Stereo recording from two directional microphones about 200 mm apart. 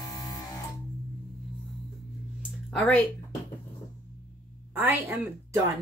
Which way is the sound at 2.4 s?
Centre (ahead or behind).